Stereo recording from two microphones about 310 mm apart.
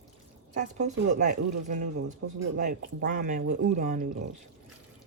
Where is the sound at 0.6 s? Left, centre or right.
Right.